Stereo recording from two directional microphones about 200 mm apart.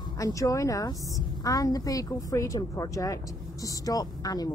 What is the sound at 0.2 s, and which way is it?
A woman's voice, 15° left (ahead or behind).